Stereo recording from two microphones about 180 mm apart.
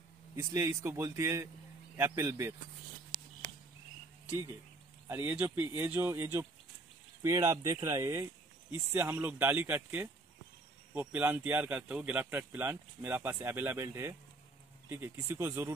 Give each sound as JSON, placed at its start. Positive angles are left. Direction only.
{"t": 0.4, "sound": "speech", "side_deg": -15}
{"t": 5.0, "sound": "speech", "side_deg": -10}